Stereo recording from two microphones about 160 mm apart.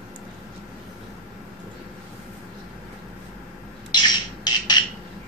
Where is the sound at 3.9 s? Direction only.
25° left (ahead or behind).